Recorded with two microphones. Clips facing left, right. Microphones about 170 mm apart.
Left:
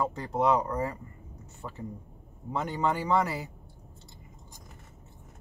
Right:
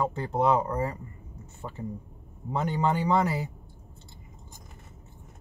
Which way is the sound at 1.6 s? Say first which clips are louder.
Right 2 dB; 10° right (ahead or behind).